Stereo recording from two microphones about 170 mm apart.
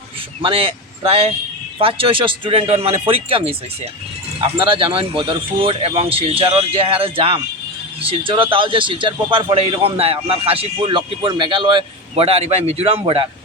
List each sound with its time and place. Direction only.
0.4 s a man's voice: 30° right (ahead or behind)
4.5 s a man's voice: 30° right (ahead or behind)